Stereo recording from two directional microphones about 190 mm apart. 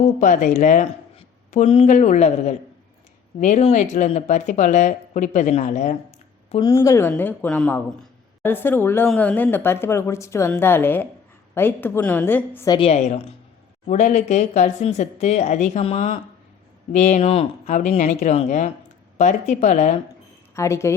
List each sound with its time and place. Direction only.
0.2 s speech: 40° left (ahead or behind)
6.6 s speech: 15° left (ahead or behind)
12.7 s speech: 30° left (ahead or behind)
20.6 s speech: 15° left (ahead or behind)